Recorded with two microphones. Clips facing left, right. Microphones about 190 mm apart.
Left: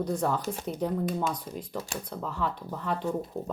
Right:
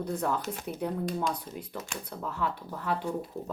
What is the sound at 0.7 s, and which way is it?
Speech, centre (ahead or behind).